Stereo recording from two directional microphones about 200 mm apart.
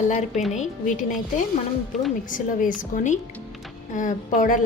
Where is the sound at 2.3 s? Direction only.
40° left (ahead or behind).